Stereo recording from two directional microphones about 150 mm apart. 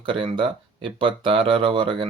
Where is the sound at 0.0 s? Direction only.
35° right (ahead or behind).